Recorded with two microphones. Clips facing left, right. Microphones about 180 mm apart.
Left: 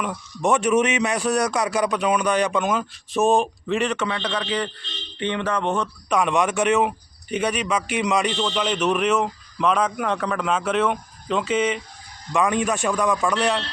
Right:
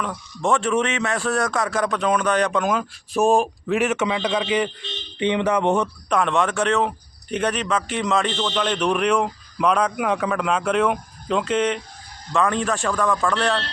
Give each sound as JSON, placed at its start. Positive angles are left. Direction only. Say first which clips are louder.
{"t": 0.0, "sound": "a man's voice", "louder": "left 1 dB", "side_deg": 15}
{"t": 6.1, "sound": "a man's voice", "louder": "left 1 dB", "side_deg": 10}